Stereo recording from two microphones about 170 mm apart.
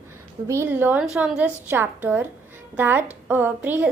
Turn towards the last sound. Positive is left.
turn(degrees=-10)  # may be behind; listen again after turning